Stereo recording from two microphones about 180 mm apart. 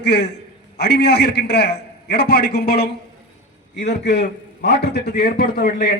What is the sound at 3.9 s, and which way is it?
A man's voice, 65° left (ahead or behind).